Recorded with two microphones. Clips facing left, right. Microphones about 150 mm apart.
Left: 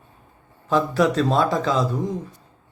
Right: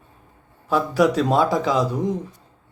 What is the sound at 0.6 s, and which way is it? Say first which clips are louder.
A man's voice: right 1 dB; 10° right (ahead or behind).